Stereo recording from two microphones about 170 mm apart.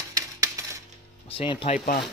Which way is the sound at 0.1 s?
20° right (ahead or behind).